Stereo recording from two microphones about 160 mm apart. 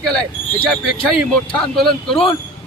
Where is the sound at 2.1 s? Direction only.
35° left (ahead or behind).